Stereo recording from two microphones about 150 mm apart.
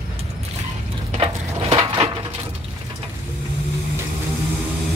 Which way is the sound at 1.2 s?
35° right (ahead or behind).